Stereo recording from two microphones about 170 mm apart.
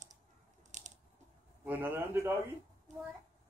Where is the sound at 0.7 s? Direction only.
45° right (ahead or behind).